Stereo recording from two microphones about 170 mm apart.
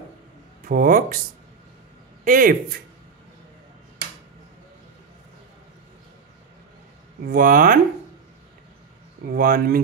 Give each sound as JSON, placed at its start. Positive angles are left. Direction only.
{"t": 0.7, "sound": "a man's voice", "side_deg": -55}
{"t": 2.2, "sound": "a man's voice", "side_deg": -55}
{"t": 7.2, "sound": "speech", "side_deg": -55}
{"t": 9.3, "sound": "speech", "side_deg": -60}